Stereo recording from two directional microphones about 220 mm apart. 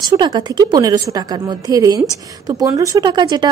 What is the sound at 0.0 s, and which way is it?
A woman's voice, 20° right (ahead or behind).